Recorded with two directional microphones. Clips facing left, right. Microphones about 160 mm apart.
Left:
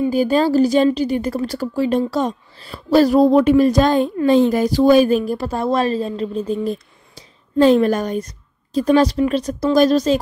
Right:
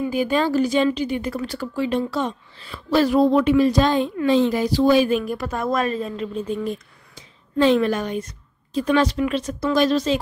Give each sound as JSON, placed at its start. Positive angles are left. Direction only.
{"t": 0.0, "sound": "a woman's voice", "side_deg": 35}